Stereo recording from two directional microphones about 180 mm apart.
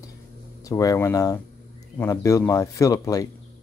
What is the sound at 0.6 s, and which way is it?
A man's voice, 20° left (ahead or behind).